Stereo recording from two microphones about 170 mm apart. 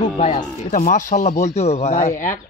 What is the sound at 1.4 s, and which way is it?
Speech, 40° left (ahead or behind).